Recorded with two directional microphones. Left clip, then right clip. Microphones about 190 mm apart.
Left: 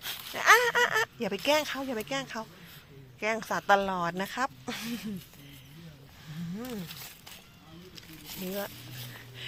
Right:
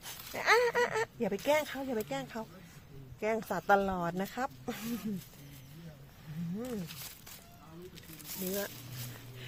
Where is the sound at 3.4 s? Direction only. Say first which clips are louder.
Left 4 dB; 5° right (ahead or behind).